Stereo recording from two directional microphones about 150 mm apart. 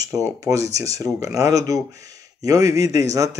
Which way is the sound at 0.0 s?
20° right (ahead or behind).